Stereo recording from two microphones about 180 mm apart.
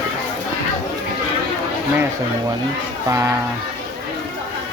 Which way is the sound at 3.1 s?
15° right (ahead or behind).